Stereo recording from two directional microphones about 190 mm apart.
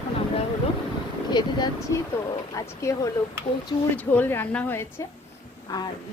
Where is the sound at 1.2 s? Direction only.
20° left (ahead or behind).